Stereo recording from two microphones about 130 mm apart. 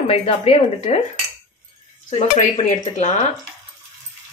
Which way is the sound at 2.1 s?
65° left (ahead or behind).